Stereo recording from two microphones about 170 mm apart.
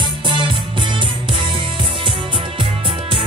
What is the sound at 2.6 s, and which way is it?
Music, 30° right (ahead or behind).